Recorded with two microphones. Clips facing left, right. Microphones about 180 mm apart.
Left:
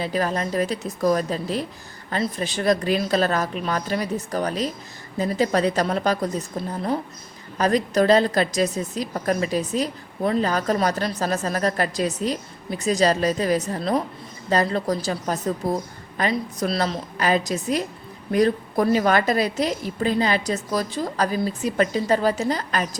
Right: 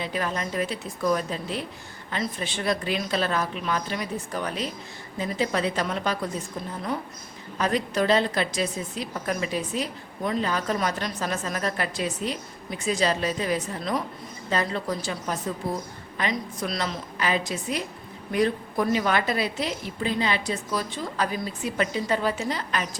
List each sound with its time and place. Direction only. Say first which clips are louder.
0.0 s a woman's voice: left 5 dB; 40° left (ahead or behind)